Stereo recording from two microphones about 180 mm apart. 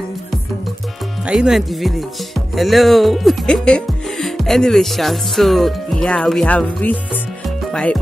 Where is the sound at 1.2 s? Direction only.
5° right (ahead or behind).